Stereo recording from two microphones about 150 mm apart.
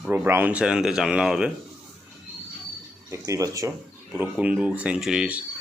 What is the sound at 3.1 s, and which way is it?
Speech, 20° right (ahead or behind).